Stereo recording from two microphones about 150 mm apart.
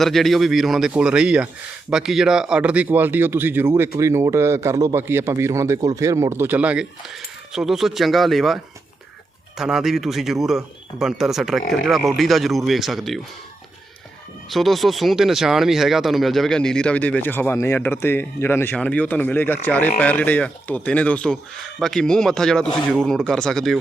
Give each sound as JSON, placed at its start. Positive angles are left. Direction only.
{"t": 0.0, "sound": "a man's voice", "side_deg": 0}
{"t": 14.5, "sound": "speech", "side_deg": 0}